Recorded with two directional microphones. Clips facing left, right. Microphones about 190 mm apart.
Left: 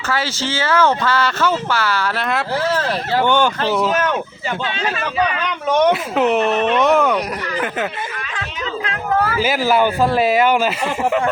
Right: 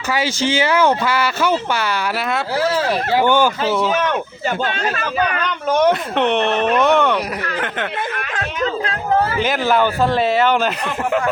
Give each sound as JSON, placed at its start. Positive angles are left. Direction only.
{"t": 0.1, "sound": "speech", "side_deg": -15}
{"t": 5.4, "sound": "speech", "side_deg": 0}
{"t": 8.9, "sound": "a sound", "side_deg": -25}
{"t": 9.4, "sound": "speech", "side_deg": 5}